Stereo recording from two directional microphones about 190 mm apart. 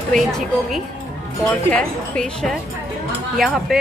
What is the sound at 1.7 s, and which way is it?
A woman's voice, 5° left (ahead or behind).